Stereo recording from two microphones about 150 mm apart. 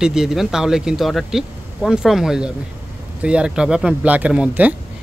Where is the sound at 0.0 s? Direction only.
5° right (ahead or behind).